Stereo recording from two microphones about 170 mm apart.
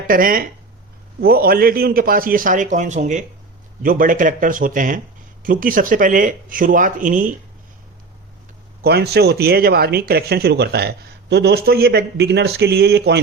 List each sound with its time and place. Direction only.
0.1 s a man's voice: 55° right (ahead or behind)
8.8 s speech: 70° right (ahead or behind)